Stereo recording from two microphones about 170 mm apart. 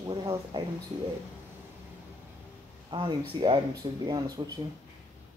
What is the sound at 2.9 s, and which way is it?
Speech, 25° right (ahead or behind).